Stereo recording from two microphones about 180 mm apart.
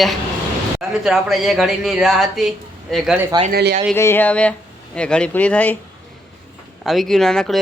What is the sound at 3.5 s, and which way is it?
Speech, 60° right (ahead or behind).